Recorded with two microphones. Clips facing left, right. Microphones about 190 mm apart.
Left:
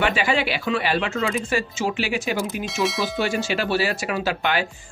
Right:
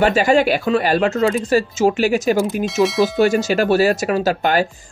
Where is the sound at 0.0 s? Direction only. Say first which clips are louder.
Right 8 dB; 45° right (ahead or behind).